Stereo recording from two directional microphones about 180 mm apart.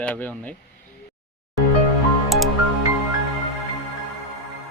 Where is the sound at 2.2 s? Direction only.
Centre (ahead or behind).